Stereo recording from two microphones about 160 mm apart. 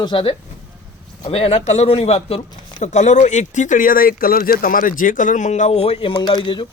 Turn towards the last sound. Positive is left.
turn(degrees=30)  # may be behind; listen again after turning